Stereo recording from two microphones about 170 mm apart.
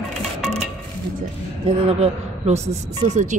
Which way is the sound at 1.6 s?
35° right (ahead or behind).